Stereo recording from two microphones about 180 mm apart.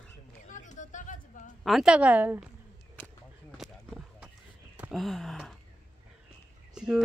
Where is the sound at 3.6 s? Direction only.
Centre (ahead or behind).